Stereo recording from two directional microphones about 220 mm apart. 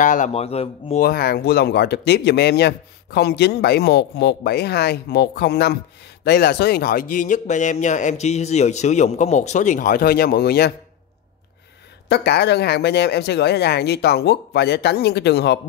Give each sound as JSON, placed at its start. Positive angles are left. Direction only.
{"t": 0.0, "sound": "speech", "side_deg": 35}
{"t": 1.0, "sound": "speech", "side_deg": 45}
{"t": 12.1, "sound": "speech", "side_deg": 50}